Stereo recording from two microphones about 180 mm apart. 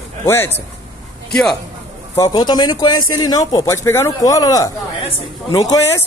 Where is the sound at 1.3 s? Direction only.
Centre (ahead or behind).